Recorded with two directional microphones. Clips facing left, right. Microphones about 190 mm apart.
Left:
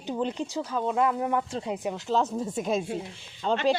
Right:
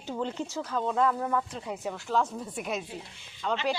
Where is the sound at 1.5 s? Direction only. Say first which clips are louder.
Left 4 dB; 30° left (ahead or behind).